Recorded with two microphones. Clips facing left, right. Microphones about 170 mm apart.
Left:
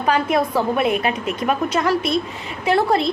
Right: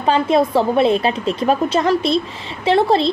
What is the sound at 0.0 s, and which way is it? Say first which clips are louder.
A woman's voice: right 3 dB; 25° right (ahead or behind).